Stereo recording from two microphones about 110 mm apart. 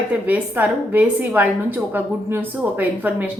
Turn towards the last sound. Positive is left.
turn(degrees=-15)  # may be behind; listen again after turning